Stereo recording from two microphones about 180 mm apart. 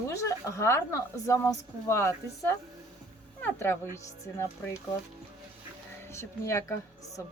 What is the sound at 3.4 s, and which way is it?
A woman's voice, 15° left (ahead or behind).